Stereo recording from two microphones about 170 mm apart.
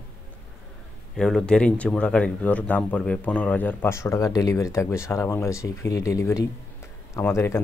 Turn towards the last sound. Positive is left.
turn(degrees=15)  # may be behind; listen again after turning